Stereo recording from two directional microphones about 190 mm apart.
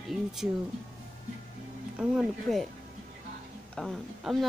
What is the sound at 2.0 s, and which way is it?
Speech, centre (ahead or behind).